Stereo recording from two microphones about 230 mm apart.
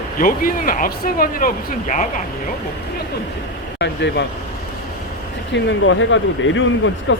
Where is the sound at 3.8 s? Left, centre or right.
Left.